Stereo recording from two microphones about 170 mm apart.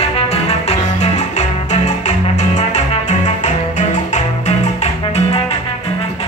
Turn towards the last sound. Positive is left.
turn(degrees=35)  # may be behind; listen again after turning